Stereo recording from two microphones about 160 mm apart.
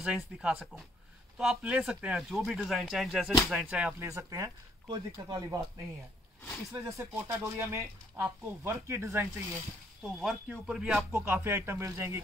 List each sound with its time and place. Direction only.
0.0 s speech: 5° right (ahead or behind); by 5.6 s 20° right (ahead or behind)
6.7 s speech: 20° right (ahead or behind)
10.2 s speech: centre (ahead or behind)
11.1 s speech: 15° right (ahead or behind)